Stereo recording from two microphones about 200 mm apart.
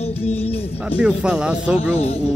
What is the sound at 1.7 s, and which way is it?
Speech, 30° left (ahead or behind).